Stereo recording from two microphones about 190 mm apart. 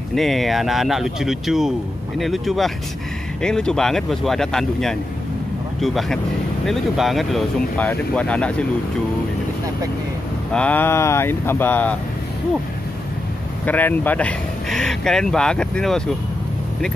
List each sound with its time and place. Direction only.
0.1 s speech: centre (ahead or behind)
10.5 s speech: 10° left (ahead or behind)
13.7 s speech: 10° left (ahead or behind)